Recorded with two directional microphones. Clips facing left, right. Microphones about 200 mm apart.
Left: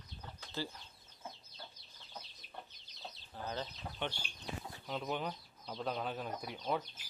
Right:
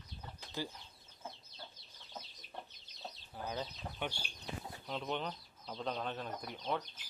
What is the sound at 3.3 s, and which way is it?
Speech, 10° right (ahead or behind).